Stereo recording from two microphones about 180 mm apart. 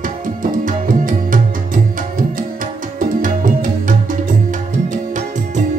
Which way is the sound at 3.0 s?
50° right (ahead or behind).